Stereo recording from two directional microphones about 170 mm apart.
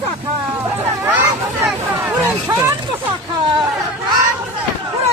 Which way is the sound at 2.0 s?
10° right (ahead or behind).